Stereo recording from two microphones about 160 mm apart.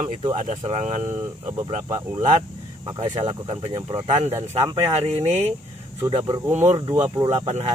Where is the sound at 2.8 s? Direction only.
30° right (ahead or behind).